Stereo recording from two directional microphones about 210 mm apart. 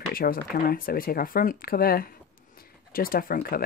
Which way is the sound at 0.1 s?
45° left (ahead or behind).